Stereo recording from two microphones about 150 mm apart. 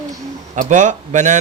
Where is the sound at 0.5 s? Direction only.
55° right (ahead or behind).